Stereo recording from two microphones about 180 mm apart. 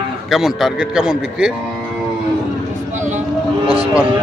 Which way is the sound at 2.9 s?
45° right (ahead or behind).